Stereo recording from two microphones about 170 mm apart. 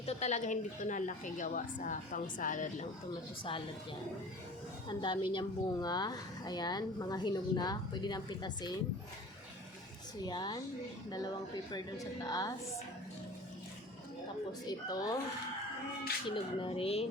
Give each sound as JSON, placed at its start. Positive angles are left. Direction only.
{"t": 0.0, "sound": "a woman's voice", "side_deg": 40}
{"t": 4.9, "sound": "a woman's voice", "side_deg": 30}
{"t": 10.2, "sound": "a woman's voice", "side_deg": 25}
{"t": 14.7, "sound": "a woman's voice", "side_deg": 25}
{"t": 16.3, "sound": "speech", "side_deg": 30}